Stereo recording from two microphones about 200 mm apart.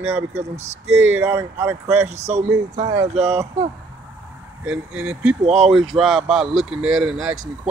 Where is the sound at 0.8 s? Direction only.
90° right.